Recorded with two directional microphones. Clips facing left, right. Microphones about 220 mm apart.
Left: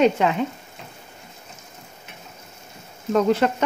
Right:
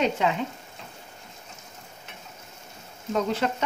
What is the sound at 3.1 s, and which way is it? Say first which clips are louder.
Speech: left 7 dB; 60° left (ahead or behind).